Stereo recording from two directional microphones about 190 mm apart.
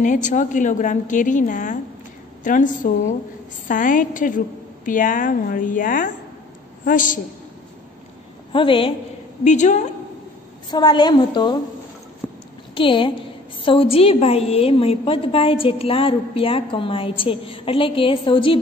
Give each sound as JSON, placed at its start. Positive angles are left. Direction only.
{"t": 0.0, "sound": "a woman's voice", "side_deg": 40}
{"t": 8.5, "sound": "a woman's voice", "side_deg": 25}
{"t": 9.4, "sound": "a woman's voice", "side_deg": 40}
{"t": 10.7, "sound": "a woman's voice", "side_deg": 25}
{"t": 12.7, "sound": "a woman's voice", "side_deg": 25}